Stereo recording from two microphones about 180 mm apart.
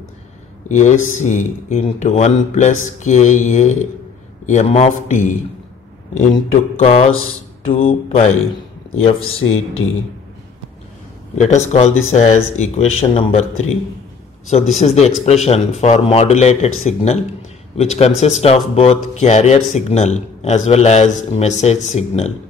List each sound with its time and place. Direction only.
0.7 s speech: 40° left (ahead or behind)
11.3 s speech: 40° left (ahead or behind)
14.8 s speech: 35° left (ahead or behind)